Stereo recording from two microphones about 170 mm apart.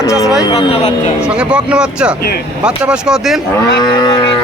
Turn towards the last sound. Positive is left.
turn(degrees=25)  # may be behind; listen again after turning